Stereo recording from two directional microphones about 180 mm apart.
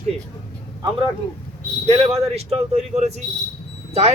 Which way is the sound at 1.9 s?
35° right (ahead or behind).